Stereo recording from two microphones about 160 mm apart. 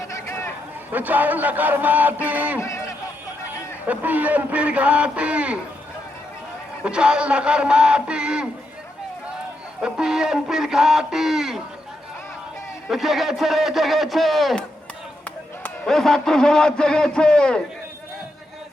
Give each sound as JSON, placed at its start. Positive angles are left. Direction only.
{"t": 0.1, "sound": "a sound", "side_deg": 15}
{"t": 0.9, "sound": "a man's voice", "side_deg": -10}
{"t": 2.6, "sound": "a sound", "side_deg": 20}
{"t": 3.8, "sound": "a man's voice", "side_deg": -10}
{"t": 6.8, "sound": "a man's voice", "side_deg": -5}
{"t": 9.8, "sound": "a man's voice", "side_deg": -5}
{"t": 12.9, "sound": "a man's voice", "side_deg": 0}
{"t": 15.6, "sound": "a man's voice", "side_deg": 5}